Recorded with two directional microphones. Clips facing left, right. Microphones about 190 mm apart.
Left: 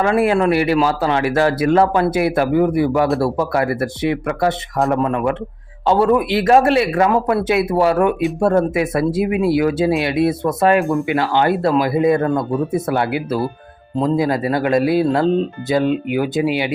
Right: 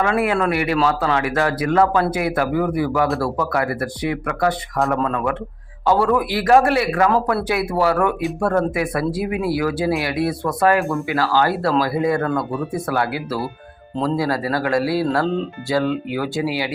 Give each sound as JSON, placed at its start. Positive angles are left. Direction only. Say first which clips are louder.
{"t": 0.0, "sound": "speech", "louder": "left 4 dB", "side_deg": 30}